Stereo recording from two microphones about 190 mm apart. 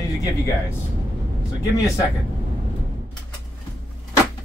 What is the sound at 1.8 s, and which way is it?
Speech, 15° left (ahead or behind).